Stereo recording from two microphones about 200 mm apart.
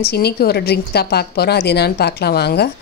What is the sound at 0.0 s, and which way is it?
A woman's voice, 55° left (ahead or behind).